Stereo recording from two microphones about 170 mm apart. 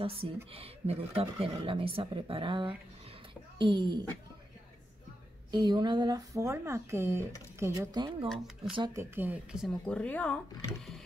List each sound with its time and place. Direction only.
0.0 s speech: 35° right (ahead or behind)
5.5 s speech: 25° right (ahead or behind)
8.9 s speech: 10° right (ahead or behind); by 11.0 s 5° left (ahead or behind)